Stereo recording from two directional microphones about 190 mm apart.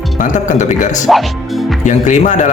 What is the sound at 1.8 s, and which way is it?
Speech, 40° left (ahead or behind).